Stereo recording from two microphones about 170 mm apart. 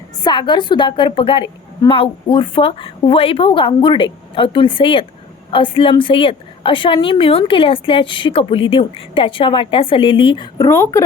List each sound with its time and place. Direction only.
0.2 s a woman's voice: 25° left (ahead or behind)
10.7 s speech: 15° left (ahead or behind)